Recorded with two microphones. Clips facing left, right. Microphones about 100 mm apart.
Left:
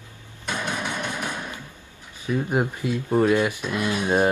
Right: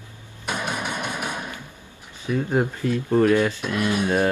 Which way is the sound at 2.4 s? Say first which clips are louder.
Right 4 dB; 15° left (ahead or behind).